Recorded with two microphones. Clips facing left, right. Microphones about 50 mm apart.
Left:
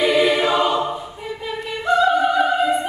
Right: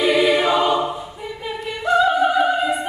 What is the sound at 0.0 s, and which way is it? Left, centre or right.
Choir, centre.